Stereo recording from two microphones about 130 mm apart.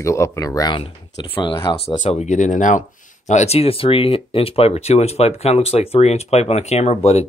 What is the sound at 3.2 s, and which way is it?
Speech, 60° left (ahead or behind).